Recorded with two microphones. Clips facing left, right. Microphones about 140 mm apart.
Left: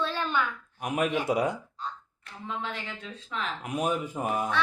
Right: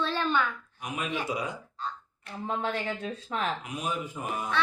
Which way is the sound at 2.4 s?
45° right (ahead or behind).